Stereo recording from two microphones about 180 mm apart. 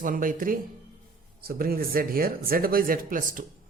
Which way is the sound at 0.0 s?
50° right (ahead or behind).